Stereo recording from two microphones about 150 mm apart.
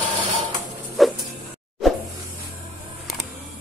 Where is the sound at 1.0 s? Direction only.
Centre (ahead or behind).